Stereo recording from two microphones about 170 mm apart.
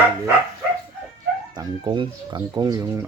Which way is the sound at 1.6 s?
25° right (ahead or behind).